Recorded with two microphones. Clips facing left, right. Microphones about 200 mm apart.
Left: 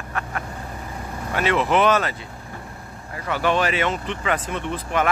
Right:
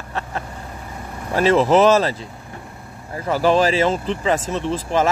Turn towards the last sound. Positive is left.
turn(degrees=-30)  # may be behind; listen again after turning